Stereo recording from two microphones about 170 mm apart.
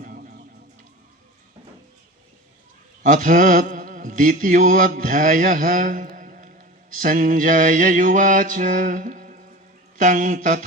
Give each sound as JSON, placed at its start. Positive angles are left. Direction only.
{"t": 0.0, "sound": "a sound", "side_deg": -55}
{"t": 3.0, "sound": "mantra", "side_deg": -50}
{"t": 10.0, "sound": "speech", "side_deg": -50}